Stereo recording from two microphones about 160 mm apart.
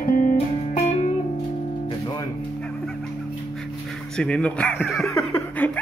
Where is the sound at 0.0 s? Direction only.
60° left (ahead or behind).